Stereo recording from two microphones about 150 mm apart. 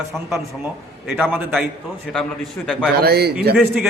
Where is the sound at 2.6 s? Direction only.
10° left (ahead or behind).